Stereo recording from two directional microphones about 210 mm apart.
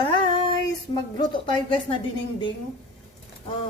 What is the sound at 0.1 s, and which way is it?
Female singing, 25° left (ahead or behind).